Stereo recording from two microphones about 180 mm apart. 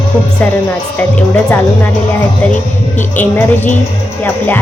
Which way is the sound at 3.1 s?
10° left (ahead or behind).